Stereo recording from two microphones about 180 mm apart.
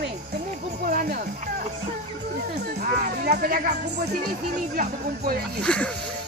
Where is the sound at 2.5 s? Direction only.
60° right (ahead or behind).